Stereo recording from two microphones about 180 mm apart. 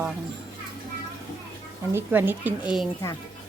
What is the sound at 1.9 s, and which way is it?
Speech, 10° right (ahead or behind).